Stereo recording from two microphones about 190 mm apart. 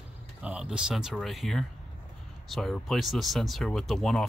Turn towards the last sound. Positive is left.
turn(degrees=0)  # may be behind; listen again after turning